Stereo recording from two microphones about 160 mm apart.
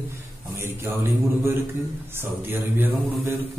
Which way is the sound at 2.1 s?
15° right (ahead or behind).